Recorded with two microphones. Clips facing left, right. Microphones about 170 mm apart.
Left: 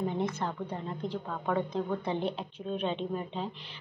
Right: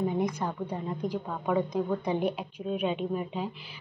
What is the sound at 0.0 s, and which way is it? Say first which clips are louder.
A woman's voice: right 3 dB; 15° right (ahead or behind).